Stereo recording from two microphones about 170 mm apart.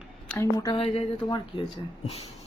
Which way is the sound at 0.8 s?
35° left (ahead or behind).